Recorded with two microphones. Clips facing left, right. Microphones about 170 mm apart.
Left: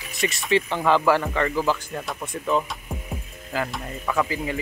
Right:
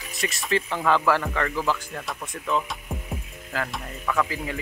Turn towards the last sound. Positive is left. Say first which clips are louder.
# left 2 dB
turn(degrees=0)  # may be behind; listen again after turning